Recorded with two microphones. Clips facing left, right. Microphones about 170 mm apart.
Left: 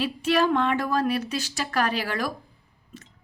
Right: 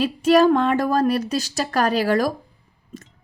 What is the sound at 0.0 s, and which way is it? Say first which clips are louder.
A woman's voice: right 7 dB; 40° right (ahead or behind).